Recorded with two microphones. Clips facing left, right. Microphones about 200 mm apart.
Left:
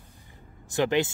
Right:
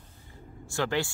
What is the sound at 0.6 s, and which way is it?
Speech, 20° left (ahead or behind).